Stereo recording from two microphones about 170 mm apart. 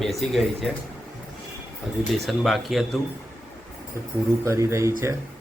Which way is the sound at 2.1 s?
Centre (ahead or behind).